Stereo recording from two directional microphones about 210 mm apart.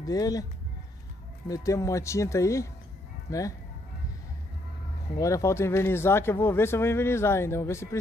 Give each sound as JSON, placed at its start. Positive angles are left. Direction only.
{"t": 0.0, "sound": "speech", "side_deg": 15}
{"t": 1.5, "sound": "speech", "side_deg": 15}
{"t": 5.2, "sound": "speech", "side_deg": 15}